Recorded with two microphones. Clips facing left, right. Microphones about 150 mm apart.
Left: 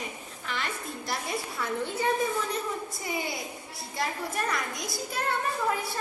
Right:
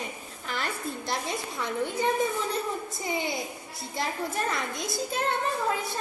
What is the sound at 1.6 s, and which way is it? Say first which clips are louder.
Speech: right 3 dB; 15° right (ahead or behind).